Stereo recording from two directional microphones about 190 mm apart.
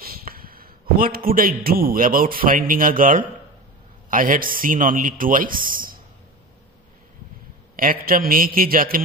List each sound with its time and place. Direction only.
0.0 s a man's voice: 50° right (ahead or behind)
7.7 s a man's voice: 50° right (ahead or behind)